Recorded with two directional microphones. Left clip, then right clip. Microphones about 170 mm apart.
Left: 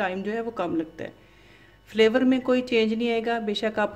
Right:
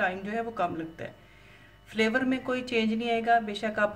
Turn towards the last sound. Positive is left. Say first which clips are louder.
# left 3 dB
turn(degrees=30)  # may be behind; listen again after turning